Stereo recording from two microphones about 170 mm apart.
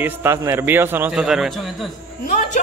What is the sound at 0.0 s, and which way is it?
A man's voice, 15° right (ahead or behind).